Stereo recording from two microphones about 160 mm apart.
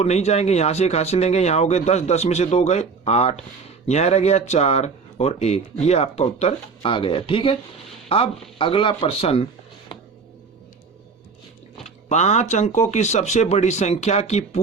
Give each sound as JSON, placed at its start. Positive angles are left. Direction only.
{"t": 0.0, "sound": "speech", "side_deg": 45}
{"t": 12.0, "sound": "speech", "side_deg": 45}